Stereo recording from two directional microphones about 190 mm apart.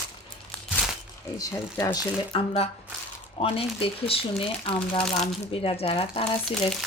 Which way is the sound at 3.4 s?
30° left (ahead or behind).